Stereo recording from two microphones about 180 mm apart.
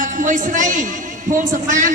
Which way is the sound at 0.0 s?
45° right (ahead or behind).